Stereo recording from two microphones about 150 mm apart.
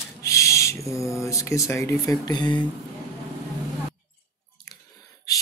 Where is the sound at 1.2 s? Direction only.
20° left (ahead or behind).